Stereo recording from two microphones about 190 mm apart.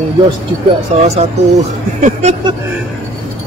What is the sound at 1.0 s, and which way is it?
Speech, 35° right (ahead or behind).